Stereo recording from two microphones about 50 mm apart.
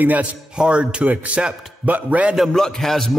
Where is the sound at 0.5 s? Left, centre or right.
Centre.